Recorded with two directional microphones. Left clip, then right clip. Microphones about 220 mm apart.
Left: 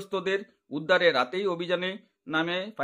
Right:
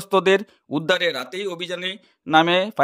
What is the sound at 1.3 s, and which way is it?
Speech, 50° right (ahead or behind).